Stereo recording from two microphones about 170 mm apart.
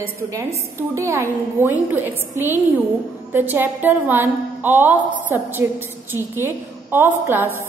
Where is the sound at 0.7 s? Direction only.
15° right (ahead or behind).